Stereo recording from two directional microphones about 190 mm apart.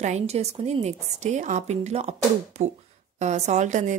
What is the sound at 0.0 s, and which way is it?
Speech, 35° right (ahead or behind).